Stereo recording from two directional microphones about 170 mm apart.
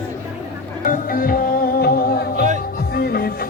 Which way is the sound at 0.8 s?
55° left (ahead or behind).